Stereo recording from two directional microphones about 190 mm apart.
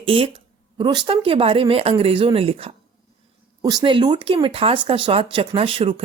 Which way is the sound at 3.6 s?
20° right (ahead or behind).